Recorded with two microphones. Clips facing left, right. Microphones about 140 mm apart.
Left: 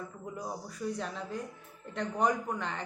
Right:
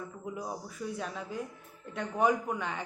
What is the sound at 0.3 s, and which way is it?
Speech, 5° right (ahead or behind).